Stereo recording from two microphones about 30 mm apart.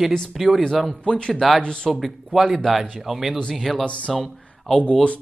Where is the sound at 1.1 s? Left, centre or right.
Left.